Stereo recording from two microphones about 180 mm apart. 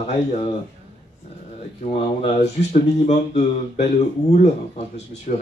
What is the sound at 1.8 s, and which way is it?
Speech, 40° left (ahead or behind).